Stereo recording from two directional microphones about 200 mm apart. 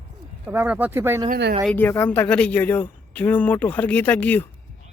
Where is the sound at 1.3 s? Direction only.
55° right (ahead or behind).